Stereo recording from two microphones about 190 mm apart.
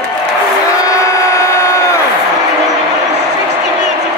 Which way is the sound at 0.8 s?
15° left (ahead or behind).